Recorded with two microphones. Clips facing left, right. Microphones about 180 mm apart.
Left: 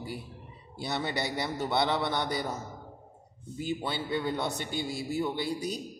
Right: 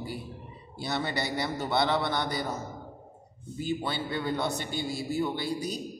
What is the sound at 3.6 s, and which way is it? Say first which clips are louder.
A man's voice: right 2 dB; 20° left (ahead or behind).